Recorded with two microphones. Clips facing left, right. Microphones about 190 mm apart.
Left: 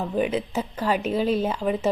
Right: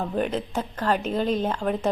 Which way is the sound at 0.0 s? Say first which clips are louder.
Left 2 dB; 5° left (ahead or behind).